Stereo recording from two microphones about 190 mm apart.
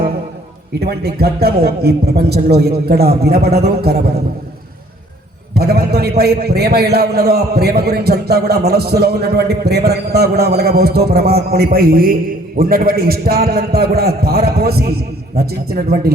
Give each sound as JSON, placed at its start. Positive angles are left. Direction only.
{"t": 0.8, "sound": "a man's voice", "side_deg": -55}
{"t": 5.5, "sound": "a man's voice", "side_deg": -55}